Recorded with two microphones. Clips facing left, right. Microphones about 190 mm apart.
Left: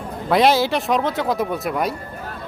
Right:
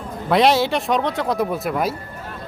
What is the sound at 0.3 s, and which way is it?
Speech, centre (ahead or behind).